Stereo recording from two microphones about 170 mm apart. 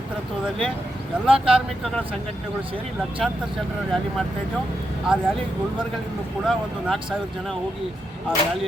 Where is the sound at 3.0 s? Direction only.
5° right (ahead or behind).